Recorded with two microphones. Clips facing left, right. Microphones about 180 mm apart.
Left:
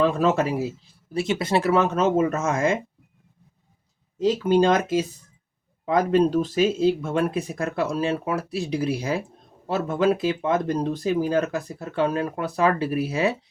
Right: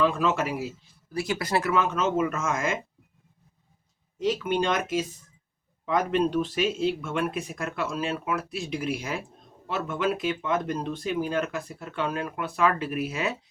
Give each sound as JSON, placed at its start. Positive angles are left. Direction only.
{"t": 0.0, "sound": "speech", "side_deg": 40}
{"t": 1.1, "sound": "speech", "side_deg": 25}
{"t": 4.2, "sound": "speech", "side_deg": 35}